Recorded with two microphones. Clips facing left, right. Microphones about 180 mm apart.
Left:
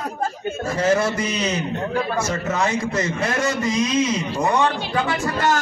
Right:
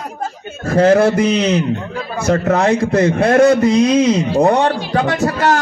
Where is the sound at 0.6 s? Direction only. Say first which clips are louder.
Right 9 dB; 60° right (ahead or behind).